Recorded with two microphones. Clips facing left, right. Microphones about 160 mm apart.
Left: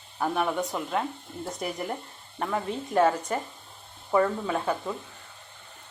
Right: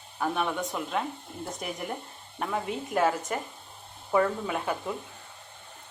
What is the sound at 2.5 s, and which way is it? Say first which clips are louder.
Speech: left 2 dB; 5° right (ahead or behind).